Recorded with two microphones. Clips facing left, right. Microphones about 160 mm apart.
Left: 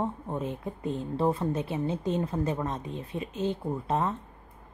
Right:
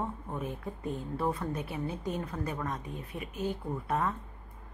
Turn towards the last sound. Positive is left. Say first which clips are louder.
# left 3 dB
turn(degrees=25)  # may be behind; listen again after turning